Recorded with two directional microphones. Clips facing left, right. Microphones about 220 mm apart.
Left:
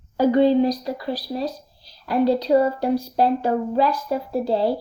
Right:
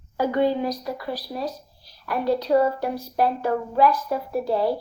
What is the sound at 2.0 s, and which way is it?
A woman's voice, 30° left (ahead or behind).